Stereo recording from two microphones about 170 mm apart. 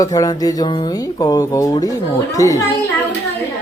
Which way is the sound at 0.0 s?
20° left (ahead or behind).